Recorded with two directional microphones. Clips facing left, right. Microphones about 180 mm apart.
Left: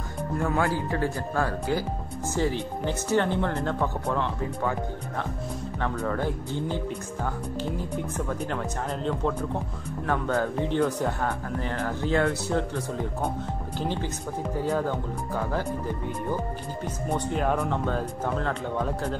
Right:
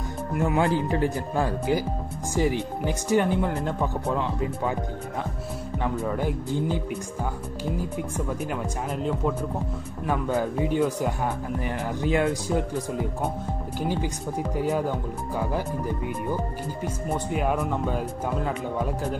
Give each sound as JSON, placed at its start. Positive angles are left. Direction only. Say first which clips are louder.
{"t": 0.4, "sound": "speech", "louder": "right 3 dB", "side_deg": -20}
{"t": 5.8, "sound": "speech", "louder": "right 1 dB", "side_deg": -15}
{"t": 8.3, "sound": "speech", "louder": "right 1 dB", "side_deg": -10}
{"t": 16.8, "sound": "speech", "louder": "even", "side_deg": -10}